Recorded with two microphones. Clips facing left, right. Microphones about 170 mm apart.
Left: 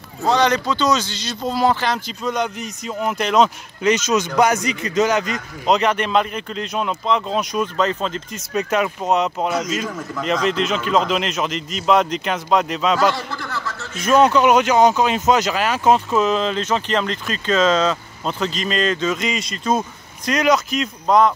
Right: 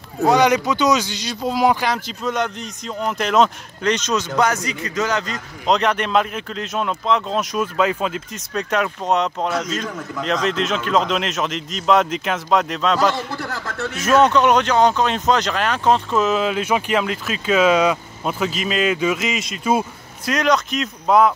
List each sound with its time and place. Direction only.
0.3 s speech: 10° right (ahead or behind); by 4.2 s 5° left (ahead or behind)
4.4 s a man's voice: 15° left (ahead or behind)
5.7 s speech: centre (ahead or behind)
8.5 s speech: 5° left (ahead or behind)
13.5 s a sound: 55° right (ahead or behind)
14.0 s speech: centre (ahead or behind)